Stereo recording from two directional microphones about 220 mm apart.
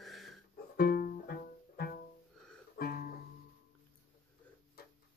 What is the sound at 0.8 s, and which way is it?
Music, 45° left (ahead or behind).